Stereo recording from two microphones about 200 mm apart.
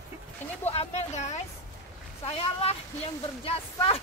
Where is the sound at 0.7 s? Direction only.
35° left (ahead or behind).